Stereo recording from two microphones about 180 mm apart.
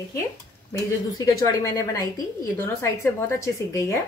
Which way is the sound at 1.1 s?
20° left (ahead or behind).